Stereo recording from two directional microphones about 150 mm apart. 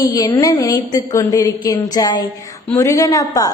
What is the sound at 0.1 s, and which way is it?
A woman's voice, 30° left (ahead or behind).